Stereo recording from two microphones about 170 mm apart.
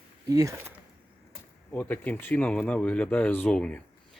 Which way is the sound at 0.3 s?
20° right (ahead or behind).